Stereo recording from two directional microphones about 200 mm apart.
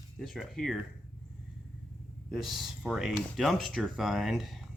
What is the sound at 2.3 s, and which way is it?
Speech, centre (ahead or behind).